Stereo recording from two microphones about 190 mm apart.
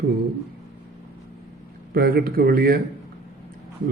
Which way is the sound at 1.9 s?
55° right (ahead or behind).